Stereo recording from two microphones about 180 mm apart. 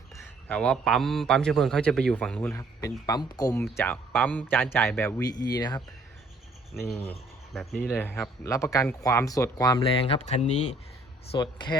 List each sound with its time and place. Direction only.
0.4 s a man's voice: 5° left (ahead or behind); by 5.8 s 20° left (ahead or behind)
7.5 s speech: centre (ahead or behind)
7.8 s speech: 10° left (ahead or behind); by 10.8 s 35° left (ahead or behind)
11.3 s speech: 25° left (ahead or behind)